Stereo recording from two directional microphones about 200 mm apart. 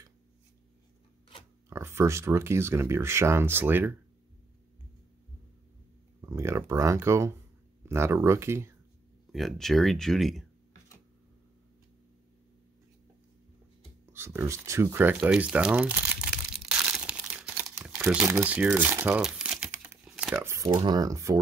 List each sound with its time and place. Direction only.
1.7 s speech: 10° right (ahead or behind)
6.2 s a sound: 15° right (ahead or behind)
7.8 s speech: 15° right (ahead or behind)
9.3 s speech: centre (ahead or behind)
14.1 s crumpling: 10° right (ahead or behind)
20.1 s speech: 5° right (ahead or behind)